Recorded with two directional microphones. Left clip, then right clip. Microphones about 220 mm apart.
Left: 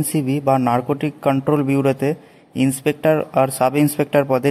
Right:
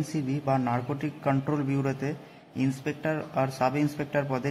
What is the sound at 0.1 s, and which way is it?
A man's voice, 40° left (ahead or behind).